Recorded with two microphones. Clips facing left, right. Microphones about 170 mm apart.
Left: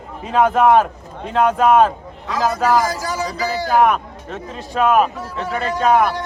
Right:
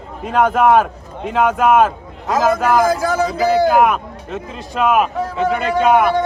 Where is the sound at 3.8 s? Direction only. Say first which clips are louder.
Even; 5° right (ahead or behind).